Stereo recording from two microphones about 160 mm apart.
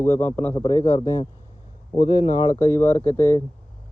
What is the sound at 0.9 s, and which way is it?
Speech, 25° left (ahead or behind).